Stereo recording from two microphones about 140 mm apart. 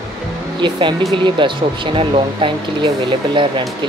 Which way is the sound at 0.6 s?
35° right (ahead or behind).